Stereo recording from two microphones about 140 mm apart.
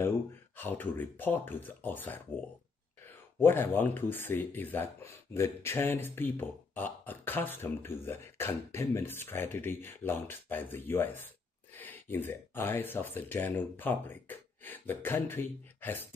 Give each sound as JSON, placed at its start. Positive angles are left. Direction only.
{"t": 0.6, "sound": "speech", "side_deg": 15}
{"t": 3.3, "sound": "speech", "side_deg": 15}